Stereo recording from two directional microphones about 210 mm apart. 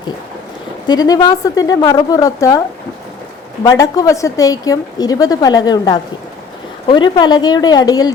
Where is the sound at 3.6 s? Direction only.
15° left (ahead or behind).